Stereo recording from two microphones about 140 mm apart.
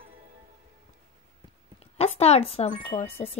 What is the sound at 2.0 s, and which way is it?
Speech, 50° left (ahead or behind).